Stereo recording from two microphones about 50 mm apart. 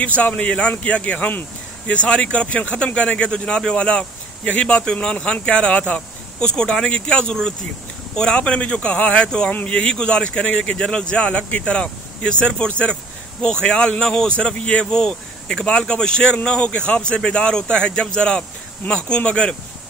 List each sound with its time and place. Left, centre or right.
0.0 s speech: left
9.5 s speech: left
9.8 s speech: centre
14.3 s speech: left